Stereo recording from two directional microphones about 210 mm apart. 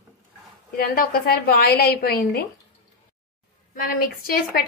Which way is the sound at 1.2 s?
45° left (ahead or behind).